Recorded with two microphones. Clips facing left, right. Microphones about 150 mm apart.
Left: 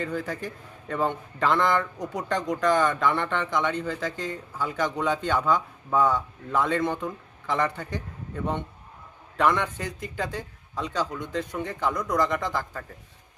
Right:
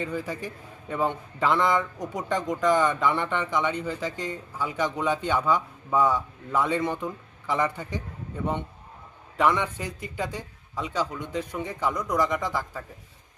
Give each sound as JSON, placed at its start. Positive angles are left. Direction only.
{"t": 0.0, "sound": "a man's voice", "side_deg": -10}
{"t": 9.4, "sound": "a man's voice", "side_deg": -10}